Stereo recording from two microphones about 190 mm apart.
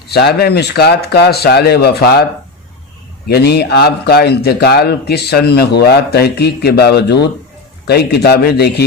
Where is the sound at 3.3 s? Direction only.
55° left (ahead or behind).